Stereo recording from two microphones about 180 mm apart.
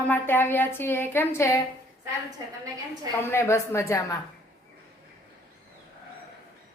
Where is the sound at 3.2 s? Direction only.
15° left (ahead or behind).